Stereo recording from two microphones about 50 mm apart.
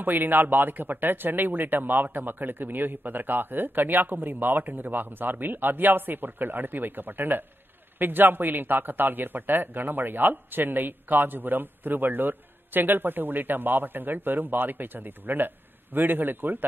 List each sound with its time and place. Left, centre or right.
0.0 s speech: right